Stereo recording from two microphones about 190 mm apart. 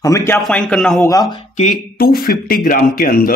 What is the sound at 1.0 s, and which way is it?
Speech, 20° left (ahead or behind).